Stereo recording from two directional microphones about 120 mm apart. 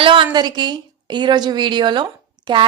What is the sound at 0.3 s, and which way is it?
A woman's voice, 35° right (ahead or behind).